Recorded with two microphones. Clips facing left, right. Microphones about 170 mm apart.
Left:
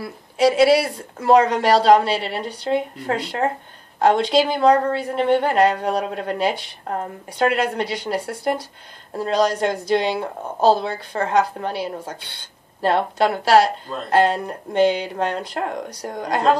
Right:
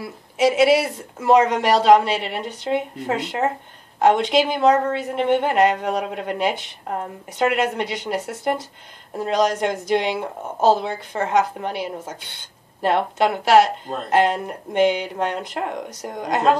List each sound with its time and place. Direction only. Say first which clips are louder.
0.0 s a woman's voice: left 1 dB; 20° right (ahead or behind)
5.8 s speech: left 1 dB; 35° left (ahead or behind)
6.1 s a woman's voice: left 1 dB; 15° right (ahead or behind)
7.5 s a woman's voice: even; 20° right (ahead or behind)